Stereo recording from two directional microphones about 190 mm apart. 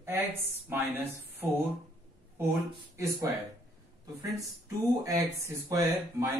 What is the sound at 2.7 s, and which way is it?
Speech, 15° right (ahead or behind).